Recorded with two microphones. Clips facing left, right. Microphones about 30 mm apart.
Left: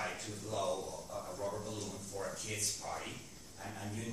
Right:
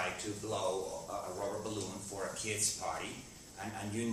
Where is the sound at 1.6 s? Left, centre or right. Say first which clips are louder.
Right 3 dB; right.